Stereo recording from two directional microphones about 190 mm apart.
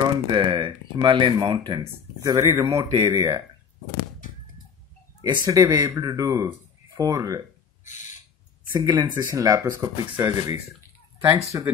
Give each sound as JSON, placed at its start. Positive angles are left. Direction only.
{"t": 0.0, "sound": "speech", "side_deg": -25}
{"t": 5.2, "sound": "speech", "side_deg": -20}
{"t": 7.8, "sound": "a sound", "side_deg": 40}
{"t": 8.8, "sound": "speech", "side_deg": -20}
{"t": 11.5, "sound": "speech", "side_deg": -15}